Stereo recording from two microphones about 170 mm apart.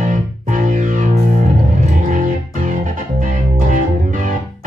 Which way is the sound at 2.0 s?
50° right (ahead or behind).